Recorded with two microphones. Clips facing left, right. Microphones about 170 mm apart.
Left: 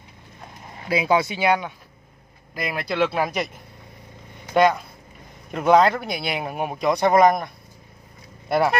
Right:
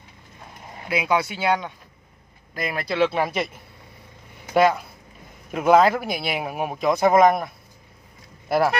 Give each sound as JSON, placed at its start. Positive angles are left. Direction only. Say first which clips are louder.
{"t": 0.8, "sound": "speech", "louder": "left 2 dB", "side_deg": 30}
{"t": 2.5, "sound": "speech", "louder": "even", "side_deg": 0}
{"t": 4.6, "sound": "speech", "louder": "even", "side_deg": -5}